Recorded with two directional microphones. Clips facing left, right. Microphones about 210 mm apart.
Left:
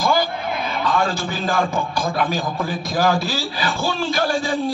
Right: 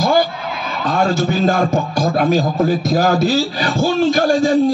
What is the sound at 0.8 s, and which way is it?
A man's voice, 50° right (ahead or behind).